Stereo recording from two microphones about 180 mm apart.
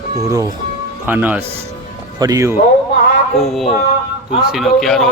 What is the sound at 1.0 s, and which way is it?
A man's voice, 10° right (ahead or behind).